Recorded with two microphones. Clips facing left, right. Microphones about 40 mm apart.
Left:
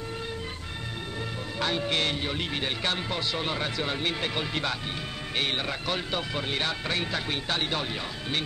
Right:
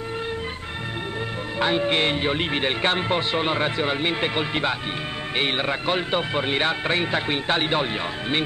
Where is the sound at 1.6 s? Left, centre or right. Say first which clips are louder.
Right 6 dB; right.